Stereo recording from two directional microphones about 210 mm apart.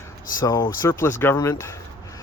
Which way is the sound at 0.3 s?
15° left (ahead or behind).